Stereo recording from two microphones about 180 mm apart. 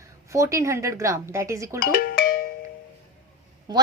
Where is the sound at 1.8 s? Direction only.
55° left (ahead or behind).